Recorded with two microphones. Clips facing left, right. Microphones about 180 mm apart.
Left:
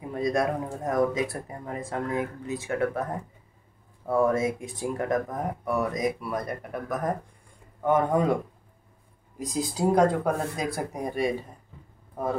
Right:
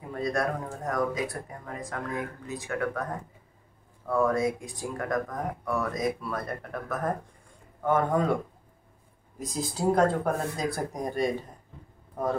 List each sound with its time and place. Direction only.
0.1 s speech: 20° left (ahead or behind)
9.5 s speech: 15° left (ahead or behind)